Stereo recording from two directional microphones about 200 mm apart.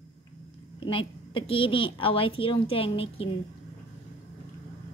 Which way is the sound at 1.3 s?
25° left (ahead or behind).